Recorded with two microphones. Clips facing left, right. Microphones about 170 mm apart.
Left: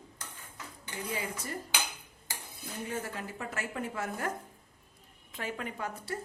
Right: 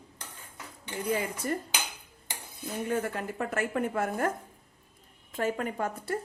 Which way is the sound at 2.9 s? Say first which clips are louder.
Right 7 dB; 60° right (ahead or behind).